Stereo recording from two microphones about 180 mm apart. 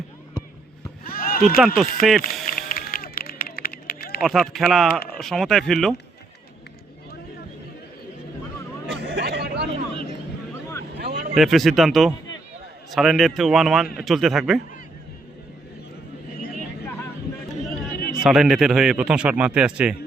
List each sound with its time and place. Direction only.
1.0 s a sound: 55° left (ahead or behind)
1.5 s a man's voice: 5° right (ahead or behind)
2.5 s run: 55° left (ahead or behind)
4.2 s a man's voice: centre (ahead or behind)
8.9 s hubbub: 65° right (ahead or behind)
9.9 s vehicle: 30° right (ahead or behind)
10.9 s a sound: 65° right (ahead or behind)
11.3 s a man's voice: centre (ahead or behind)
18.2 s a man's voice: centre (ahead or behind)